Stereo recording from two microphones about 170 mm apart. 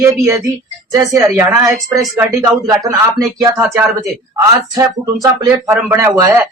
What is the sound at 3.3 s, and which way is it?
Speech, 20° right (ahead or behind).